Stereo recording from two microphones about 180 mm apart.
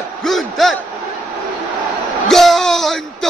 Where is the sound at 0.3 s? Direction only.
Centre (ahead or behind).